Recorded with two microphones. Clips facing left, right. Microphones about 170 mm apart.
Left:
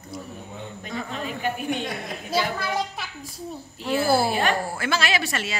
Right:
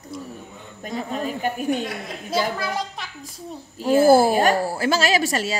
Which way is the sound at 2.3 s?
Centre (ahead or behind).